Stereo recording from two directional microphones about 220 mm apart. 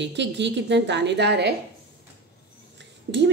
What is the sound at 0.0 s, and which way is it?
A woman's voice, 55° right (ahead or behind).